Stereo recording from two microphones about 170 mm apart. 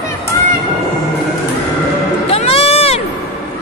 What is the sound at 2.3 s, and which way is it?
Sheep, 35° left (ahead or behind).